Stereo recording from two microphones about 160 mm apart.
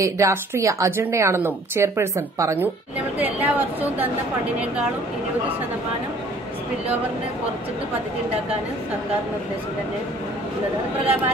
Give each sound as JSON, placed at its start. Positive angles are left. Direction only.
{"t": 0.0, "sound": "a woman's voice", "side_deg": -20}